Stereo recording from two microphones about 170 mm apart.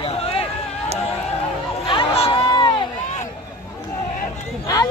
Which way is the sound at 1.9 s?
30° left (ahead or behind).